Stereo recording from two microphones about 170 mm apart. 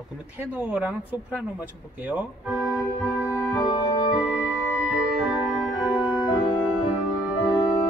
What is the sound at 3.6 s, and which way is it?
Organ, 25° left (ahead or behind).